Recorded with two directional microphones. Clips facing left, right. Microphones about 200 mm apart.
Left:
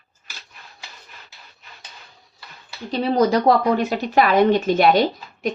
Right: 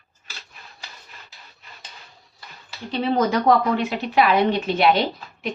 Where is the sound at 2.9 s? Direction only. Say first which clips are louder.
Left 3 dB; 40° left (ahead or behind).